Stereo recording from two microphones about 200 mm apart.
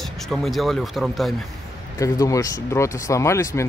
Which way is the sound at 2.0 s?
15° left (ahead or behind).